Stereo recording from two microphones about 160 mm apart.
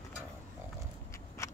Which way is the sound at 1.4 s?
15° left (ahead or behind).